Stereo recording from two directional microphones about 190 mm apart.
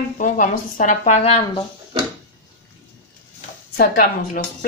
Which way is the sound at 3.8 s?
50° left (ahead or behind).